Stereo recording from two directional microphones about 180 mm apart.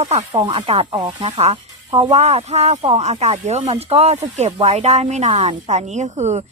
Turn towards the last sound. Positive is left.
turn(degrees=-40)  # may be behind; listen again after turning